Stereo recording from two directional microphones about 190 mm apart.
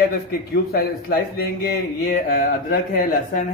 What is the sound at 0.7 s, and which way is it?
A man's voice, 55° left (ahead or behind).